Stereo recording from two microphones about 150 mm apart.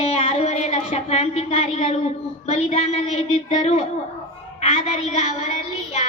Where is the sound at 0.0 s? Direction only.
45° left (ahead or behind).